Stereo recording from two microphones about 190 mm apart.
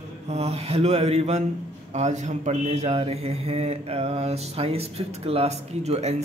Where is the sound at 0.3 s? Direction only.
35° right (ahead or behind).